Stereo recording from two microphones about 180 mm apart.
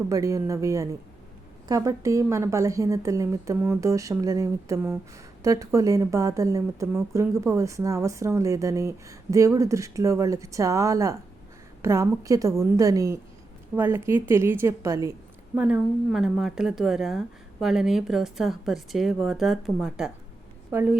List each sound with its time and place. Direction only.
0.1 s a woman's voice: 15° right (ahead or behind)